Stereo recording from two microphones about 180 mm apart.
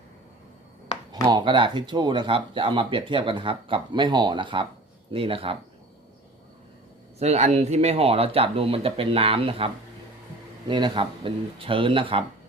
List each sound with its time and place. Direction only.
1.1 s speech: 25° right (ahead or behind)
7.2 s speech: 35° right (ahead or behind)